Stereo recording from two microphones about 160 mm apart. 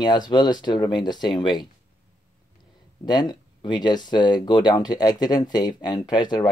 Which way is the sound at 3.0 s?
25° left (ahead or behind).